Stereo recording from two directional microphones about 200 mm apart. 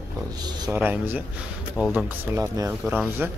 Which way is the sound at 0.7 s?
10° right (ahead or behind).